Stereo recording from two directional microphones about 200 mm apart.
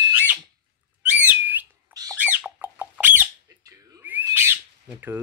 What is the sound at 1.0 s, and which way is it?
Bird, 10° right (ahead or behind).